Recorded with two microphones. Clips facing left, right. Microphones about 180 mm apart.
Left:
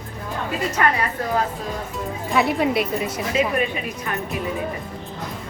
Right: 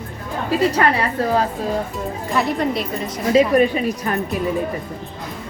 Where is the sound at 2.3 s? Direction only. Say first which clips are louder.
Left 1 dB; centre (ahead or behind).